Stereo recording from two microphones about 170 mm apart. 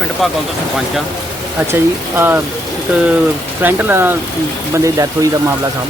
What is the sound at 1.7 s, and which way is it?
Speech, 10° right (ahead or behind).